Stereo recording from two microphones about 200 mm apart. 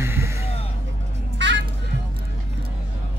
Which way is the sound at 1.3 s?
65° right (ahead or behind).